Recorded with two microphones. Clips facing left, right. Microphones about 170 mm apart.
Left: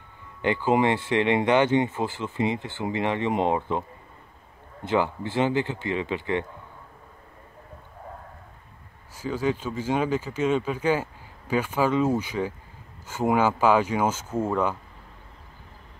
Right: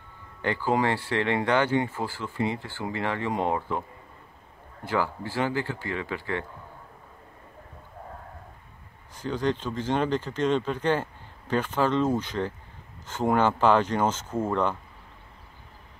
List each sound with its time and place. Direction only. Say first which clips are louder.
0.4 s speech: left 3 dB; 20° left (ahead or behind)
4.8 s speech: left 3 dB; 20° left (ahead or behind)
9.1 s speech: left 1 dB; 5° left (ahead or behind)